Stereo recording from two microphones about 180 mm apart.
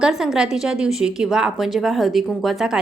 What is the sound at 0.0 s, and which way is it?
Speech, 5° right (ahead or behind).